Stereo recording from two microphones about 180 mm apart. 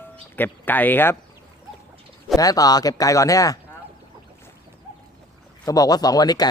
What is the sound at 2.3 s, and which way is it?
Speech, 20° left (ahead or behind).